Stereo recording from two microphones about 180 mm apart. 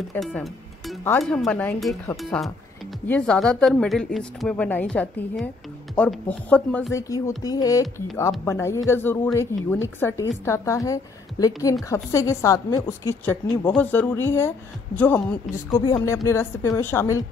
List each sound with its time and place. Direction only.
0.2 s music: centre (ahead or behind)
1.2 s speech: 5° left (ahead or behind)